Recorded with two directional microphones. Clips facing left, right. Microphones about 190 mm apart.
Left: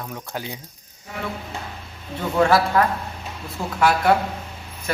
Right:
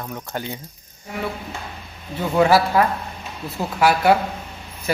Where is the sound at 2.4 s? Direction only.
5° right (ahead or behind).